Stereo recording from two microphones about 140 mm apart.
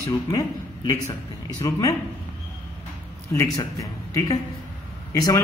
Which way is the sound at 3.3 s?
25° left (ahead or behind).